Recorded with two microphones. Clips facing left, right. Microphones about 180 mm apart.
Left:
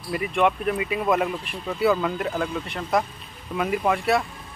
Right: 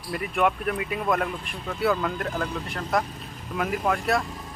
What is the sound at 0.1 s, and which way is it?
Speech, centre (ahead or behind).